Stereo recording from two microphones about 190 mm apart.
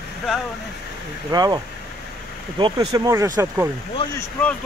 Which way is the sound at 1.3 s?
20° right (ahead or behind).